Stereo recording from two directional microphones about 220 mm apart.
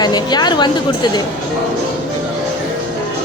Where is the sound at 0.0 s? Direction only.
20° left (ahead or behind).